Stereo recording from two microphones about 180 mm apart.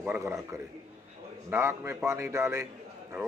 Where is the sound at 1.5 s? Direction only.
15° right (ahead or behind).